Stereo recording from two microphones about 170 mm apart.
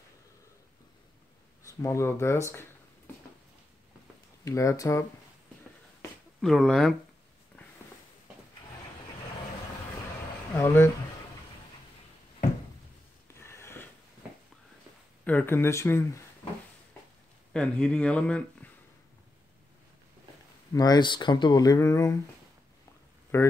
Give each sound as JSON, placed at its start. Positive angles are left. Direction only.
{"t": 1.7, "sound": "speech", "side_deg": 15}
{"t": 4.5, "sound": "speech", "side_deg": 20}
{"t": 6.4, "sound": "speech", "side_deg": 0}
{"t": 10.5, "sound": "speech", "side_deg": 10}
{"t": 13.3, "sound": "a sound", "side_deg": 15}
{"t": 15.2, "sound": "speech", "side_deg": 10}
{"t": 17.5, "sound": "speech", "side_deg": 5}
{"t": 20.7, "sound": "speech", "side_deg": 25}
{"t": 23.3, "sound": "speech", "side_deg": 15}